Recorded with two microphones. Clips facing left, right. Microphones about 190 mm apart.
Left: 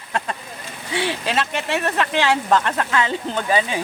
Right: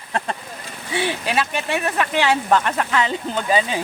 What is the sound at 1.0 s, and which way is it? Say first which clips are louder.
Speech: right 1 dB; 15° right (ahead or behind).